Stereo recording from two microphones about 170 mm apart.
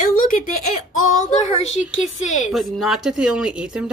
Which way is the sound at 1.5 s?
40° left (ahead or behind).